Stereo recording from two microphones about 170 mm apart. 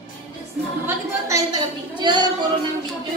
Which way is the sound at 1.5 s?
25° right (ahead or behind).